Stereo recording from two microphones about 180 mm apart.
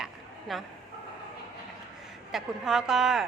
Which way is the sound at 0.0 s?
Centre (ahead or behind).